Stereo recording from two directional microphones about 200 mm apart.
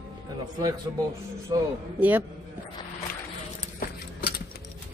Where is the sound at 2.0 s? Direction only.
10° right (ahead or behind).